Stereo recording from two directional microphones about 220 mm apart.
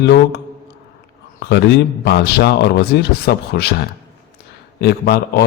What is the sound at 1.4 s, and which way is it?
A man's voice, 50° left (ahead or behind).